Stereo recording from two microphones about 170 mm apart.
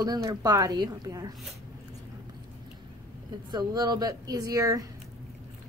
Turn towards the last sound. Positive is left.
turn(degrees=-20)  # may be behind; listen again after turning